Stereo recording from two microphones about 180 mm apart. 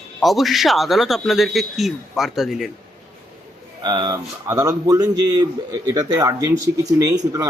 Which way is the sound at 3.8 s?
25° right (ahead or behind).